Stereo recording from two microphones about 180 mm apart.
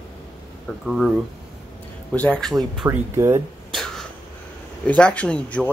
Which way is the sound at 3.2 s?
15° right (ahead or behind).